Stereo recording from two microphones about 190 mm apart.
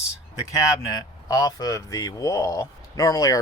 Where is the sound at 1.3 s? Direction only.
20° left (ahead or behind).